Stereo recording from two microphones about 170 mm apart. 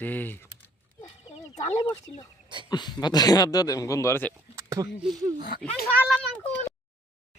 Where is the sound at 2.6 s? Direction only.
25° left (ahead or behind).